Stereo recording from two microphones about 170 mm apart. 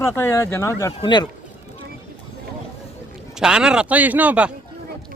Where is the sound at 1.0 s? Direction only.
25° left (ahead or behind).